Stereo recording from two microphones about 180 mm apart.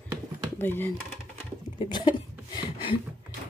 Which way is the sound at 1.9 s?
25° left (ahead or behind).